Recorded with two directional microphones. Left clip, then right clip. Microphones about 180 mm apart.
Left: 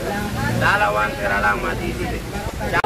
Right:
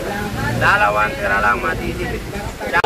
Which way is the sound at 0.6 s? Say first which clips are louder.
Right 3 dB; 5° left (ahead or behind).